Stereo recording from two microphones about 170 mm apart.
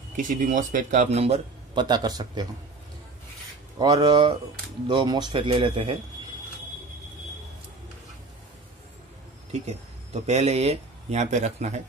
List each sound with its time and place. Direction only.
0.2 s speech: 50° right (ahead or behind); by 2.4 s 25° right (ahead or behind)
3.7 s a man's voice: 25° right (ahead or behind)
9.5 s speech: 40° right (ahead or behind)